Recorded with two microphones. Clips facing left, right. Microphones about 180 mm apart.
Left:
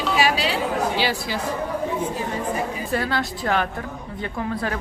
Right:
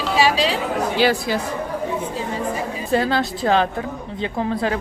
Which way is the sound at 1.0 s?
50° right (ahead or behind).